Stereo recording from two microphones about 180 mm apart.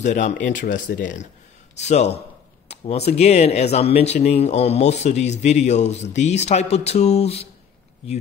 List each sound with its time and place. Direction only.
0.0 s speech: 40° left (ahead or behind)